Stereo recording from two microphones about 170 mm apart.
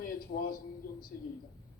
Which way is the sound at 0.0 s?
60° left (ahead or behind).